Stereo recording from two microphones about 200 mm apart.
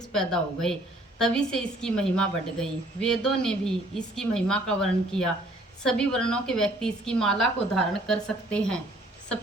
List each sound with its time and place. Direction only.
0.1 s a woman's voice: 5° left (ahead or behind)